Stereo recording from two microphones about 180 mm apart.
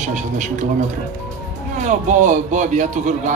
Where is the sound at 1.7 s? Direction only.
45° right (ahead or behind).